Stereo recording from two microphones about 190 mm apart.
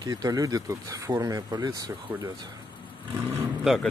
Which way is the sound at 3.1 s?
10° right (ahead or behind).